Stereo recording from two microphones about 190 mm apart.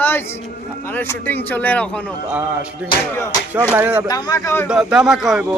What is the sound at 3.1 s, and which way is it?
Speech, 15° left (ahead or behind).